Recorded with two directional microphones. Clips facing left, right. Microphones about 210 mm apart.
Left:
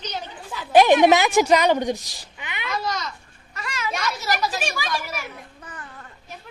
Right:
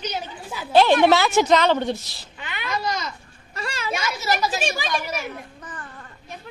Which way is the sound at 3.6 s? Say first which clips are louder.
Right 1 dB; 30° right (ahead or behind).